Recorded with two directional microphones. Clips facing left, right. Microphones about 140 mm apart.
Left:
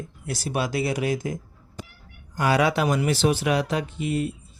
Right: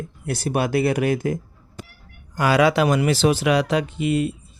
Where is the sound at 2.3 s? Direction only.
90° right.